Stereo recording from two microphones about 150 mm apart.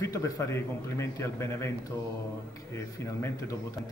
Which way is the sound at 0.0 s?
20° left (ahead or behind).